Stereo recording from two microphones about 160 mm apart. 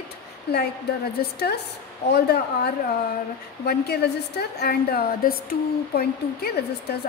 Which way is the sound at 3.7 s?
80° left.